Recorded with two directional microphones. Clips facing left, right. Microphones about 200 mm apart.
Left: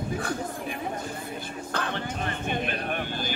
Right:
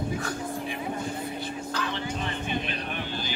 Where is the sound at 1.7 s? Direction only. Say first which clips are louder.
Left 2 dB; 55° left (ahead or behind).